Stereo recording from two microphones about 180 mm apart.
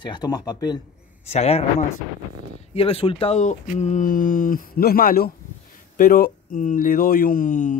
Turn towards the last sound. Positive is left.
turn(degrees=45)  # may be behind; listen again after turning